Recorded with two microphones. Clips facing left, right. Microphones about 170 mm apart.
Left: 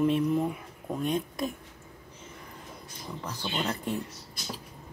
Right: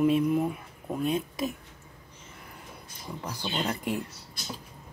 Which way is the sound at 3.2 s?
10° right (ahead or behind).